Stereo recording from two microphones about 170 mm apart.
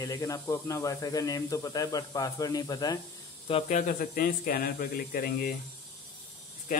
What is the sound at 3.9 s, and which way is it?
Speech, 55° left (ahead or behind).